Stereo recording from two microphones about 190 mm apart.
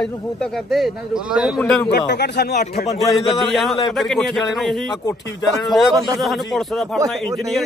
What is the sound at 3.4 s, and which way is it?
A man's voice, centre (ahead or behind).